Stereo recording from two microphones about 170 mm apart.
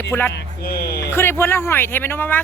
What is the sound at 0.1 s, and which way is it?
Speech, 15° left (ahead or behind).